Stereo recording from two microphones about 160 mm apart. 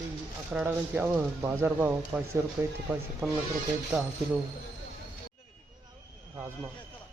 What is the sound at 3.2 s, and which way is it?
Speech, 10° right (ahead or behind).